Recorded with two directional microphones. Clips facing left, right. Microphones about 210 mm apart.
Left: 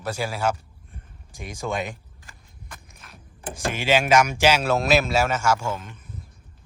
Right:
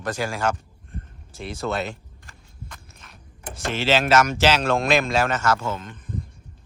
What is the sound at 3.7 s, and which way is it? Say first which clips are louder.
Speech: even; 15° left (ahead or behind).